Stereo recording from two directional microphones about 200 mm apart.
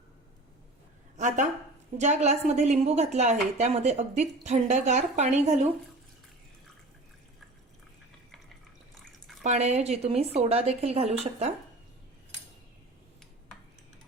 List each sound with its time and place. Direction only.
1.1 s a sound: 35° right (ahead or behind)
2.0 s a woman's voice: 35° right (ahead or behind)
9.4 s a woman's voice: 35° right (ahead or behind)